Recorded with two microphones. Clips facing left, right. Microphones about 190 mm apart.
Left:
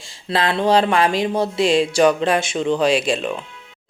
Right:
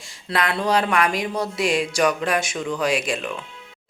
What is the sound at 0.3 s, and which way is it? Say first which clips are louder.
Speech: left 4 dB; 25° left (ahead or behind).